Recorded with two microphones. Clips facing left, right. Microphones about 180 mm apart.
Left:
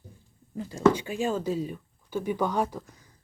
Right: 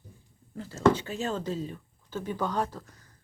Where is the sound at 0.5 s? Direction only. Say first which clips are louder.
Left 1 dB; 15° left (ahead or behind).